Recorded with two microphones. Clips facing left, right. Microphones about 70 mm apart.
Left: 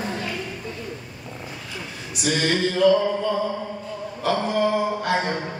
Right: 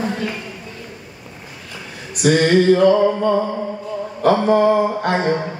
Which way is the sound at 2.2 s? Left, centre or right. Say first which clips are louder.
Right 9 dB; right.